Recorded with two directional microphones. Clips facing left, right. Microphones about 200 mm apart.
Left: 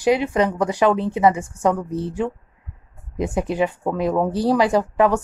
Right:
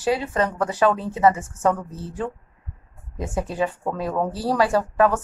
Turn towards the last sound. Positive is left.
turn(degrees=15)  # may be behind; listen again after turning